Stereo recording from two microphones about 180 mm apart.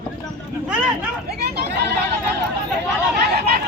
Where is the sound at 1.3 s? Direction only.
65° right (ahead or behind).